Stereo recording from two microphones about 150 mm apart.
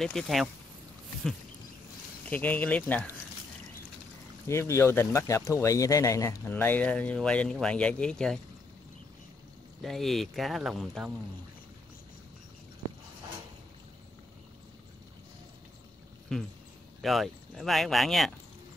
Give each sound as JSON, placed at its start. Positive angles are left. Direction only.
{"t": 0.0, "sound": "speech", "side_deg": 5}
{"t": 2.2, "sound": "speech", "side_deg": 10}
{"t": 4.5, "sound": "speech", "side_deg": 20}
{"t": 9.8, "sound": "speech", "side_deg": 0}
{"t": 16.3, "sound": "speech", "side_deg": 5}